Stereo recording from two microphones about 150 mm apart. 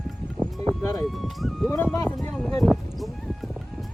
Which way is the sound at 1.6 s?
15° left (ahead or behind).